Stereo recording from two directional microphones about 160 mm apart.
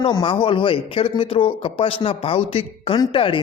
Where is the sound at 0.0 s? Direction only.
30° left (ahead or behind).